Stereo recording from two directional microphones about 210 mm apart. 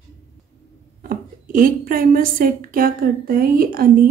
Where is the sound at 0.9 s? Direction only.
40° right (ahead or behind).